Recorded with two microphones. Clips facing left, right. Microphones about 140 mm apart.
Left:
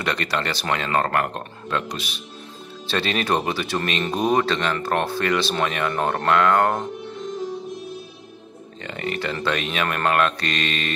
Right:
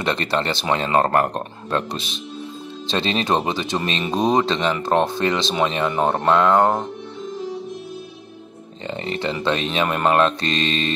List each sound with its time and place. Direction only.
0.0 s speech: 25° right (ahead or behind)
2.0 s speech: 25° right (ahead or behind)
8.8 s speech: 25° right (ahead or behind)